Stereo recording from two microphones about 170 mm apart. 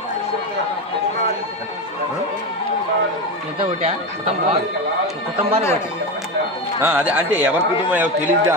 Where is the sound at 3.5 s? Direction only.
35° right (ahead or behind).